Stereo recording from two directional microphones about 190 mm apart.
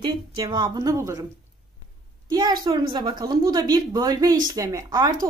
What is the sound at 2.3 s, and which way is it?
Speech, 25° right (ahead or behind).